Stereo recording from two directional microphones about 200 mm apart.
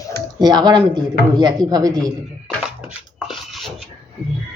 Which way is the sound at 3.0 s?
Centre (ahead or behind).